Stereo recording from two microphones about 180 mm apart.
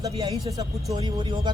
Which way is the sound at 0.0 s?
20° right (ahead or behind).